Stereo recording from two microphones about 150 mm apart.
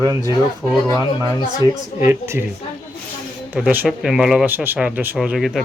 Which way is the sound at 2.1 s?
20° right (ahead or behind).